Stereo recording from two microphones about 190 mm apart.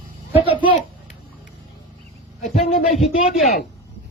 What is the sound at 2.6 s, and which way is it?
Speech, 30° left (ahead or behind).